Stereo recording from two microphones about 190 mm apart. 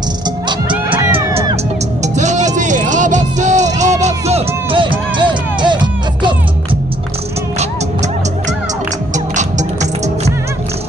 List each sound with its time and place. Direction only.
1.1 s music: 30° right (ahead or behind)
2.1 s music: 40° right (ahead or behind)
9.1 s music: 40° right (ahead or behind)